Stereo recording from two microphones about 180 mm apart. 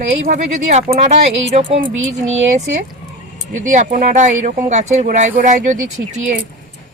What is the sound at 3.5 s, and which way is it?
Speech, 45° right (ahead or behind).